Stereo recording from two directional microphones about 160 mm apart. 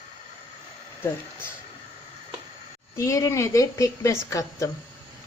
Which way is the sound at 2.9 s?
20° left (ahead or behind).